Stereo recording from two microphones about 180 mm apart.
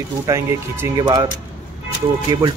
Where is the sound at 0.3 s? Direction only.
20° right (ahead or behind).